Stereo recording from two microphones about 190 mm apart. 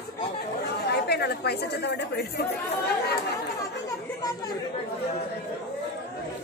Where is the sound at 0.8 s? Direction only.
60° left (ahead or behind).